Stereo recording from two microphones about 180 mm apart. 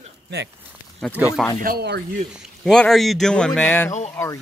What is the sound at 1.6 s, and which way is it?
Speech, 60° right (ahead or behind).